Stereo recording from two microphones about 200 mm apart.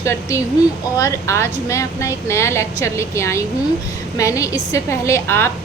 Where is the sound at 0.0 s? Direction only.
15° left (ahead or behind).